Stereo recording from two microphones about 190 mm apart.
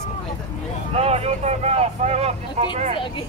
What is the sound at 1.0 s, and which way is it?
Speech, 30° right (ahead or behind).